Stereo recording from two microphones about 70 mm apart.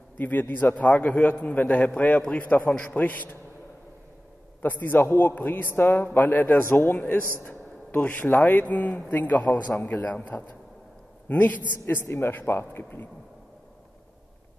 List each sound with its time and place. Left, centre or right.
0.2 s a man's voice: left
1.8 s a man's voice: centre
4.6 s a man's voice: left